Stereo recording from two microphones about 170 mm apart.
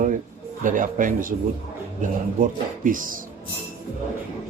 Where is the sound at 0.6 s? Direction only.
50° right (ahead or behind).